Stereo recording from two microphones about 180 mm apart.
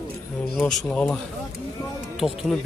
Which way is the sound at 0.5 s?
5° left (ahead or behind).